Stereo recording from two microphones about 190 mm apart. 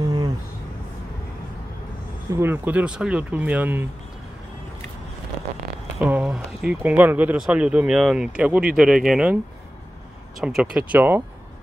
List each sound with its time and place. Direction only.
0.0 s a sound: 20° right (ahead or behind)
2.3 s speech: 10° right (ahead or behind)
5.9 s speech: 10° right (ahead or behind)
10.4 s speech: 5° right (ahead or behind)